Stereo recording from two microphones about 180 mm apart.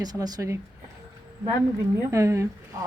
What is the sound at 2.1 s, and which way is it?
Speech, 15° right (ahead or behind).